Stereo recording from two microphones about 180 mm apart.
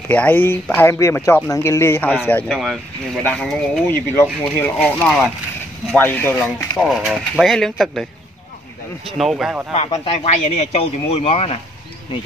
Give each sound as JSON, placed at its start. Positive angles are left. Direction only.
{"t": 0.1, "sound": "speech", "side_deg": 10}
{"t": 2.4, "sound": "speech", "side_deg": 0}
{"t": 9.2, "sound": "speech", "side_deg": 0}
{"t": 9.8, "sound": "speech", "side_deg": 35}